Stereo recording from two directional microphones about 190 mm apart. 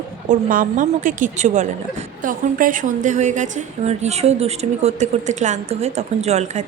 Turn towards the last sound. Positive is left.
turn(degrees=-35)  # may be behind; listen again after turning